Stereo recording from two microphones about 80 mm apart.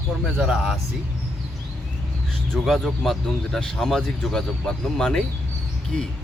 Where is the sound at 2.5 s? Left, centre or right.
Centre.